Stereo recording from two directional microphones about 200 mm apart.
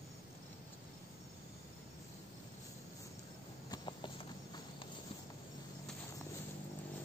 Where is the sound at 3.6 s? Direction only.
25° left (ahead or behind).